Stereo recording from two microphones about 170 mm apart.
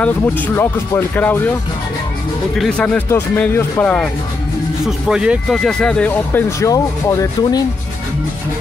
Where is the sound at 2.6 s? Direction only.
5° left (ahead or behind).